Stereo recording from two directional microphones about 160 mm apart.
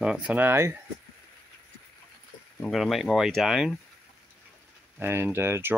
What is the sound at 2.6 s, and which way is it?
Speech, centre (ahead or behind).